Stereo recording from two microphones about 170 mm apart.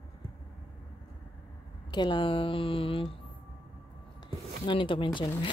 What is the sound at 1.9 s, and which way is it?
Speech, 25° left (ahead or behind).